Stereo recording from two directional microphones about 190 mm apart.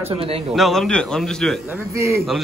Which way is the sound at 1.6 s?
15° right (ahead or behind).